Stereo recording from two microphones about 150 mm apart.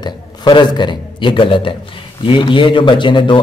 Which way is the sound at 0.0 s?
30° left (ahead or behind).